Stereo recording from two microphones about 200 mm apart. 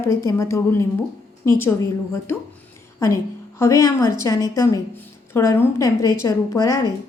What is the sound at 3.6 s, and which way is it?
Speech, 15° left (ahead or behind).